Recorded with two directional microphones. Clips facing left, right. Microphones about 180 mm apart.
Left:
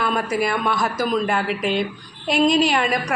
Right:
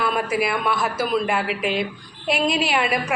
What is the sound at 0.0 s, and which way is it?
A woman's voice, 5° right (ahead or behind).